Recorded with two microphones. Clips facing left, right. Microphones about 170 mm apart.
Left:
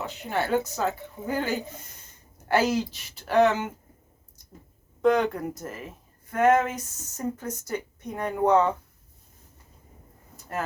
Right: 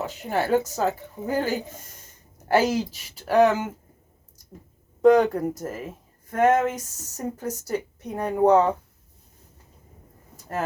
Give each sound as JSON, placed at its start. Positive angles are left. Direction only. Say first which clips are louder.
{"t": 0.0, "sound": "speech", "louder": "right 3 dB", "side_deg": -45}
{"t": 5.0, "sound": "speech", "louder": "right 5 dB", "side_deg": -40}